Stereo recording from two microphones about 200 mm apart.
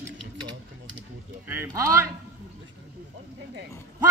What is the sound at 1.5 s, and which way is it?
Speech, 15° right (ahead or behind).